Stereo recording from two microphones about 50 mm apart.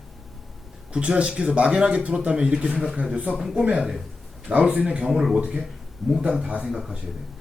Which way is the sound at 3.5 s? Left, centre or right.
Right.